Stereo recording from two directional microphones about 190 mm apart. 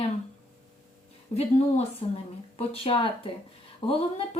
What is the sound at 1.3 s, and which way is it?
Speech, 35° left (ahead or behind).